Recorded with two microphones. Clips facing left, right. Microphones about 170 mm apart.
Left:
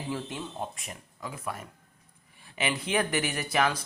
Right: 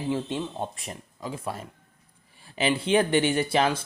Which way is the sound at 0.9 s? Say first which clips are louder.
Right 5 dB; 25° right (ahead or behind).